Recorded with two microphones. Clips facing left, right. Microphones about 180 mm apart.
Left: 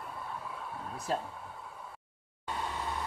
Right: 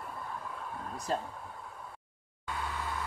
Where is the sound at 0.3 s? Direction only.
5° left (ahead or behind).